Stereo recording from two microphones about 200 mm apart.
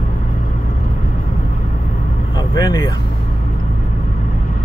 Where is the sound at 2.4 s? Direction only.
20° left (ahead or behind).